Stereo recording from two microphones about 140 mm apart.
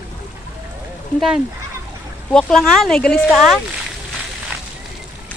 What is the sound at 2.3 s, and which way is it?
Speech, 5° left (ahead or behind).